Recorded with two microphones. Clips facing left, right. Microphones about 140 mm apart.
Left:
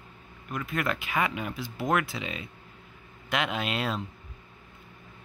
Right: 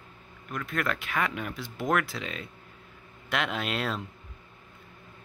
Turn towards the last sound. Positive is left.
turn(degrees=0)  # may be behind; listen again after turning